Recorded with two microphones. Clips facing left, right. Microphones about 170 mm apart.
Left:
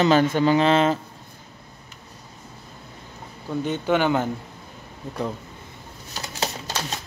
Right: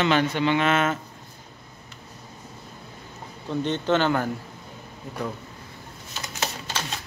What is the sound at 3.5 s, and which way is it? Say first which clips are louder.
Speech: left 1 dB; 10° left (ahead or behind).